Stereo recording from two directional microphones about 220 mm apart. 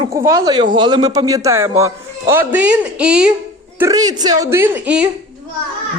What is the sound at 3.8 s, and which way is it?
A man's voice, 15° right (ahead or behind).